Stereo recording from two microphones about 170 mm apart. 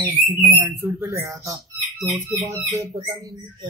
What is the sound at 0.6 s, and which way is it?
Speech, 15° right (ahead or behind).